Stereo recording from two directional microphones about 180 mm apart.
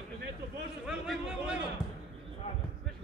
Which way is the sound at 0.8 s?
5° right (ahead or behind).